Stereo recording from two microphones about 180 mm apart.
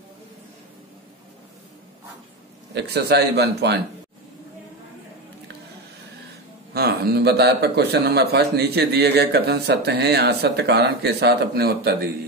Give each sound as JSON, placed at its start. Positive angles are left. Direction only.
{"t": 2.7, "sound": "speech", "side_deg": -65}
{"t": 6.7, "sound": "speech", "side_deg": -60}